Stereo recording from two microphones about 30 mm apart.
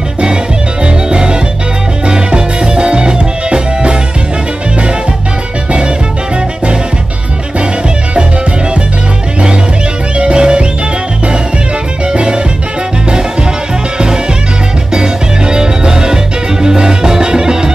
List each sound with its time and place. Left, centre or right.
0.8 s music: right
10.1 s music: right
12.1 s music: right
13.9 s music: right